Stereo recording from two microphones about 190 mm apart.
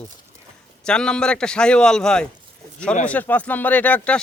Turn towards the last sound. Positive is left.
turn(degrees=10)  # may be behind; listen again after turning